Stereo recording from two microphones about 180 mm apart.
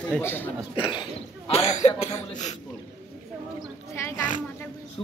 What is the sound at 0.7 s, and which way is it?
Speech, 25° left (ahead or behind).